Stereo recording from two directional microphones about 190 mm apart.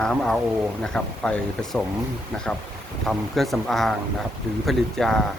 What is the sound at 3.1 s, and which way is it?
Speech, centre (ahead or behind).